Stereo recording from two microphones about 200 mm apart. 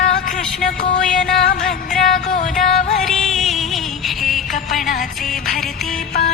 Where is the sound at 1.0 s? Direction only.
5° left (ahead or behind).